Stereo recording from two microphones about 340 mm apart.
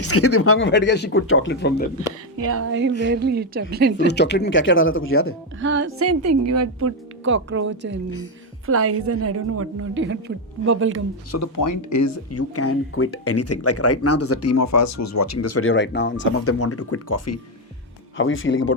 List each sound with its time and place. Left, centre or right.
0.1 s speech: left
2.5 s a woman's voice: right
3.9 s speech: left
5.5 s speech: right
11.5 s speech: left
18.2 s speech: left